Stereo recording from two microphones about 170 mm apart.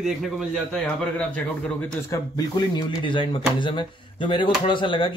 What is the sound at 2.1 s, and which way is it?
A man's voice, 25° left (ahead or behind).